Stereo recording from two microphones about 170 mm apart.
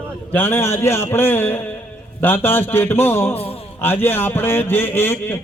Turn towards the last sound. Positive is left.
turn(degrees=15)  # may be behind; listen again after turning